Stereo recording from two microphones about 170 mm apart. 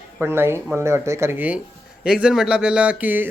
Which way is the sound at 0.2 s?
15° right (ahead or behind).